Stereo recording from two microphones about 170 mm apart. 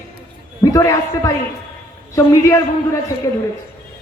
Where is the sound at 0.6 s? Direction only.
20° left (ahead or behind).